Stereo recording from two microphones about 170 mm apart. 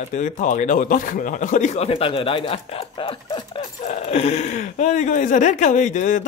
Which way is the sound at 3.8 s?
40° left (ahead or behind).